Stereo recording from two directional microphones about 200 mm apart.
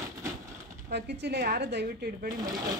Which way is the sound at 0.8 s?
55° right (ahead or behind).